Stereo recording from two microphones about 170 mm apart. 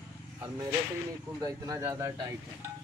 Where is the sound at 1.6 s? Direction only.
20° right (ahead or behind).